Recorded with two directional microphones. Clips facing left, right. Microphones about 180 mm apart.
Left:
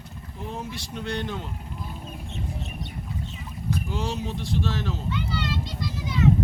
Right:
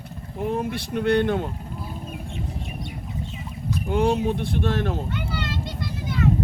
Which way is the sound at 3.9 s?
55° right (ahead or behind).